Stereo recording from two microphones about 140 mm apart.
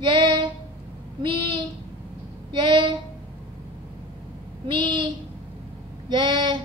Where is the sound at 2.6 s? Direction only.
35° right (ahead or behind).